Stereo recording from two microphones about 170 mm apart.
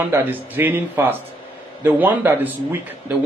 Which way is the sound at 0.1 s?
10° right (ahead or behind).